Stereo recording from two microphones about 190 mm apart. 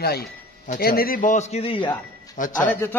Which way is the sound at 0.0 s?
55° left (ahead or behind).